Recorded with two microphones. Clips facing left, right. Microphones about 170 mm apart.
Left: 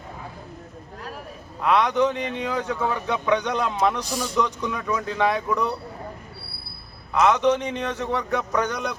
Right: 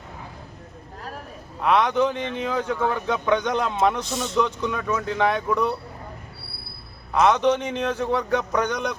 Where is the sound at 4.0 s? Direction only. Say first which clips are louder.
Right 1 dB; 25° right (ahead or behind).